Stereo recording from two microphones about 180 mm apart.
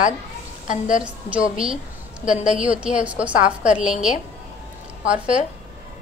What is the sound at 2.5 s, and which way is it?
A woman's voice, 5° right (ahead or behind).